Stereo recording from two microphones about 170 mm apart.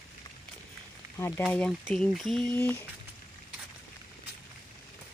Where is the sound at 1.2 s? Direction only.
15° left (ahead or behind).